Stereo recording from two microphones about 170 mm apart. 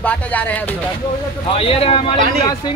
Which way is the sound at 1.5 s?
35° left (ahead or behind).